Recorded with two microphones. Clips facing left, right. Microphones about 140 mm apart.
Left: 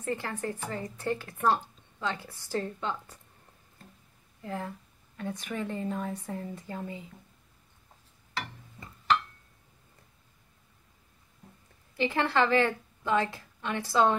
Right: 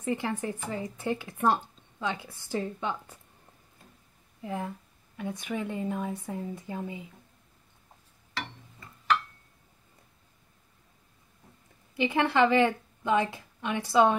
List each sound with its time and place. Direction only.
0.0 s a woman's voice: 15° right (ahead or behind)
4.4 s a woman's voice: 15° right (ahead or behind)
12.0 s a woman's voice: 15° right (ahead or behind)